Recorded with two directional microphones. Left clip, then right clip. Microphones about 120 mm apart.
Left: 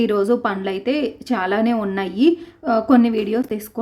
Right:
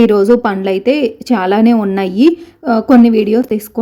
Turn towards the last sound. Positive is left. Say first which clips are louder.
# right 9 dB
turn(degrees=-35)  # may be behind; listen again after turning